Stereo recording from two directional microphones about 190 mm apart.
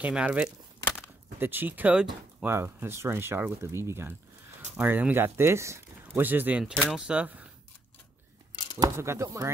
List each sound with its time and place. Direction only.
0.0 s speech: 5° right (ahead or behind)
0.8 s a sound: 10° left (ahead or behind)
1.4 s speech: 10° right (ahead or behind)
8.7 s speech: 15° right (ahead or behind)